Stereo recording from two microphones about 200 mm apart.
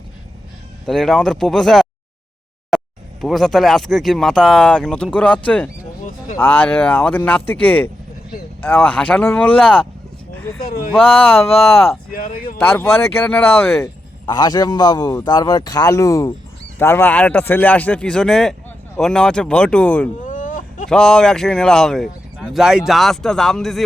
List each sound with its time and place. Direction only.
0.9 s speech: centre (ahead or behind)
10.7 s speech: 45° left (ahead or behind)
11.5 s speech: 30° left (ahead or behind)
12.1 s speech: 45° left (ahead or behind)
12.5 s speech: 10° left (ahead or behind)
20.2 s a sound: 40° left (ahead or behind)
20.9 s speech: 5° left (ahead or behind)